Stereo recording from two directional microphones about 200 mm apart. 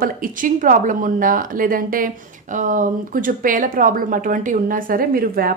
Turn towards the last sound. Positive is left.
turn(degrees=-45)  # may be behind; listen again after turning